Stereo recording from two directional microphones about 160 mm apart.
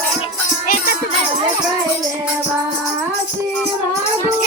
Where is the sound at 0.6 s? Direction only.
60° left (ahead or behind).